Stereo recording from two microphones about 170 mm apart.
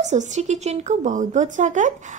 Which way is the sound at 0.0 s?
45° right (ahead or behind).